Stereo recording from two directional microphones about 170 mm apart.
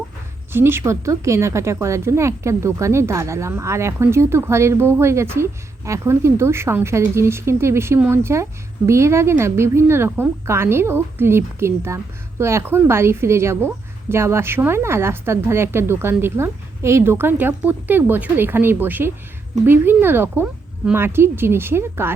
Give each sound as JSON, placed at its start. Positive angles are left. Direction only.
{"t": 0.5, "sound": "a woman's voice", "side_deg": -15}